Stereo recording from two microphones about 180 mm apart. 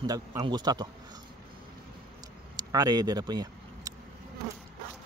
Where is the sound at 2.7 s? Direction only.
20° right (ahead or behind).